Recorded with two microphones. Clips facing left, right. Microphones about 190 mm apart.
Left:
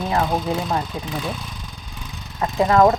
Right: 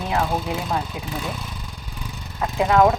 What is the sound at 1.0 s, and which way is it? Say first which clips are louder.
Speech: left 2 dB; 35° left (ahead or behind).